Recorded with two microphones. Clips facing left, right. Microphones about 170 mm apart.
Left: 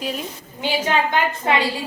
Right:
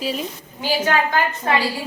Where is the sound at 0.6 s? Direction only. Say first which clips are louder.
Right 1 dB; 25° left (ahead or behind).